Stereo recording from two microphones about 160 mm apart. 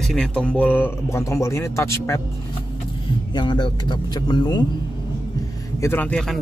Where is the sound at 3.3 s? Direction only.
30° left (ahead or behind).